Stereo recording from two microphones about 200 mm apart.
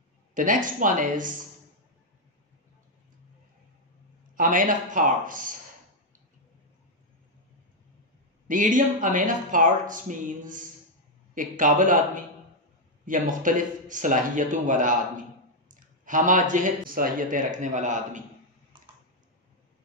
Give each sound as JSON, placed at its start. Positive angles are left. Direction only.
{"t": 0.3, "sound": "speech", "side_deg": -40}
{"t": 4.4, "sound": "speech", "side_deg": -40}
{"t": 8.5, "sound": "speech", "side_deg": -40}
{"t": 13.0, "sound": "speech", "side_deg": -40}